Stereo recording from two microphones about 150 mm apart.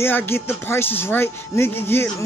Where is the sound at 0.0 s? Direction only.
15° left (ahead or behind).